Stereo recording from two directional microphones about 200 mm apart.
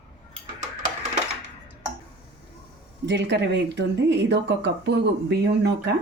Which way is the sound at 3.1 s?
60° right (ahead or behind).